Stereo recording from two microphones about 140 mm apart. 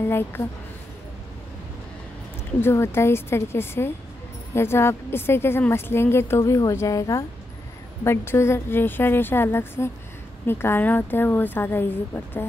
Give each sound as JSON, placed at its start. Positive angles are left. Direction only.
{"t": 0.1, "sound": "a woman's voice", "side_deg": 15}
{"t": 2.6, "sound": "a woman's voice", "side_deg": 15}